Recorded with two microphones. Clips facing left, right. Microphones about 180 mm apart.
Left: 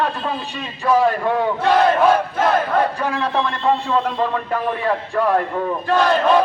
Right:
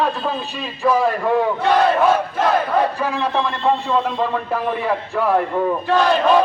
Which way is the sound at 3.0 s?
5° right (ahead or behind).